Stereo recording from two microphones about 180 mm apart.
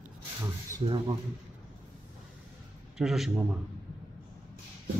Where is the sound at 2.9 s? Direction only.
Centre (ahead or behind).